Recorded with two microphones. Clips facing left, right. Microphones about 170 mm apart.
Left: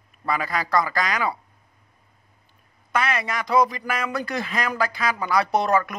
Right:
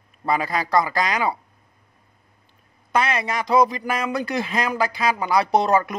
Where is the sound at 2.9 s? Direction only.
25° right (ahead or behind).